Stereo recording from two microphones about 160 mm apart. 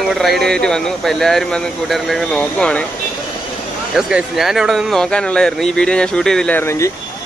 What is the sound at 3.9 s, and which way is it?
Speech, 5° right (ahead or behind).